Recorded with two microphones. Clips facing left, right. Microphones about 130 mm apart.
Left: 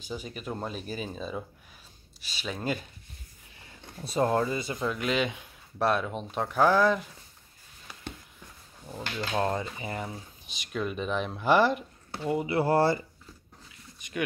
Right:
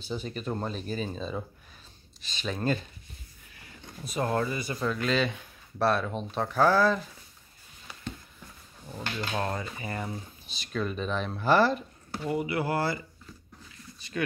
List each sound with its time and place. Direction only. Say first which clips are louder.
0.0 s speech: right 3 dB; 10° left (ahead or behind)
3.5 s speech: even; 25° left (ahead or behind)
9.3 s speech: left 5 dB; 20° left (ahead or behind)
13.9 s speech: even; 15° left (ahead or behind)